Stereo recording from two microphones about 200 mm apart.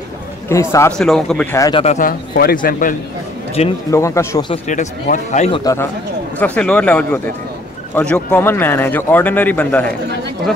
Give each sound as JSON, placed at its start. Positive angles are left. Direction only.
{"t": 0.5, "sound": "a man's voice", "side_deg": 15}
{"t": 1.6, "sound": "a man's voice", "side_deg": 25}
{"t": 2.0, "sound": "a man's voice", "side_deg": 50}
{"t": 3.6, "sound": "speech", "side_deg": 35}
{"t": 3.9, "sound": "speech", "side_deg": 15}
{"t": 4.6, "sound": "speech", "side_deg": 40}
{"t": 5.6, "sound": "speech", "side_deg": 15}